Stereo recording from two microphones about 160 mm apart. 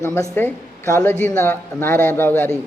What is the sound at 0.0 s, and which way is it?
A woman's voice, 15° left (ahead or behind).